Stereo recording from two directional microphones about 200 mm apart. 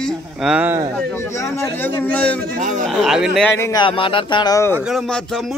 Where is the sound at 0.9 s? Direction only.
10° left (ahead or behind).